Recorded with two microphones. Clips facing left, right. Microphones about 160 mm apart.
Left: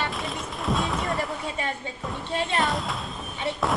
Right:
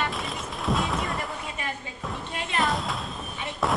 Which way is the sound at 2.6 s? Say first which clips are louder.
Even; centre (ahead or behind).